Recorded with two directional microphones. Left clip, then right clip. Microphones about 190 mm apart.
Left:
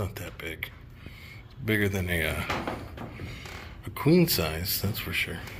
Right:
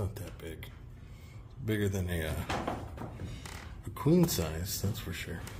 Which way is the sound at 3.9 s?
Centre (ahead or behind).